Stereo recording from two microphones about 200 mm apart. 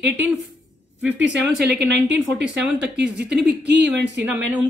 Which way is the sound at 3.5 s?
55° right (ahead or behind).